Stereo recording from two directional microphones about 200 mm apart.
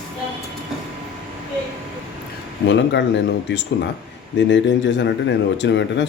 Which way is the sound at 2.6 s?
65° left (ahead or behind).